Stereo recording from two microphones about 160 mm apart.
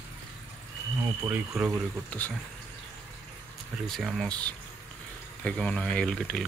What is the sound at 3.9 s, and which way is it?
Speech, centre (ahead or behind).